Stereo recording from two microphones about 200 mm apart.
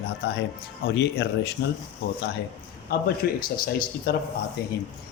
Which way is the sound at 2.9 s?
50° left (ahead or behind).